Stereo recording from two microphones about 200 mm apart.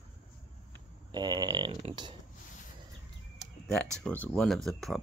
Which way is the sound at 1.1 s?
20° right (ahead or behind).